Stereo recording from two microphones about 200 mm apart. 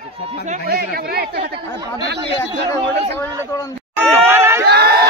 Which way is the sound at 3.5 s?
15° left (ahead or behind).